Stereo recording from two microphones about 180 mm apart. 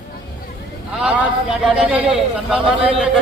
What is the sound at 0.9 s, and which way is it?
A man's voice, 5° right (ahead or behind).